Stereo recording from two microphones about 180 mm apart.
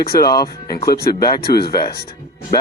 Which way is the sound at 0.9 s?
60° left (ahead or behind).